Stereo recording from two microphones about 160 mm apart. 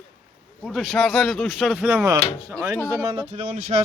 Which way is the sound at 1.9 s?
15° right (ahead or behind).